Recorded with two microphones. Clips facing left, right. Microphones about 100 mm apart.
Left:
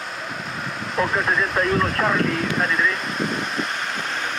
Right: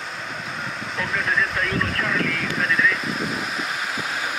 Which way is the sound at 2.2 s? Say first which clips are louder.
Left 2 dB; centre (ahead or behind).